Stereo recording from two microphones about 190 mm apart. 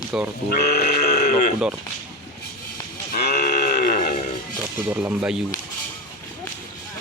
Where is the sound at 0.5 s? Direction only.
55° left (ahead or behind).